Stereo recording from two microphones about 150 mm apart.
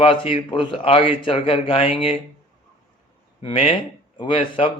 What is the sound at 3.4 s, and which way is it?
A man's voice, 40° left (ahead or behind).